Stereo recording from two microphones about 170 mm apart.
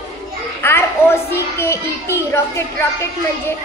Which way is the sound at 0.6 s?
15° left (ahead or behind).